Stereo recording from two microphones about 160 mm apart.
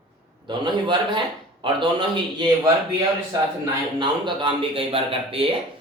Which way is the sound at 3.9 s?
30° right (ahead or behind).